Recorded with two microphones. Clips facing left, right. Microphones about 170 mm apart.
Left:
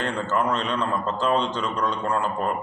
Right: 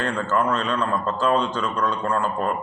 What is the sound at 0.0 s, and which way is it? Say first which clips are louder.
A man's voice: right 2 dB; 20° left (ahead or behind).